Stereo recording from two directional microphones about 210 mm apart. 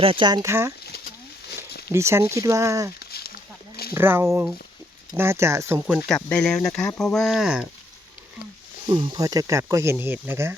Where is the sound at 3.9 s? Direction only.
10° right (ahead or behind).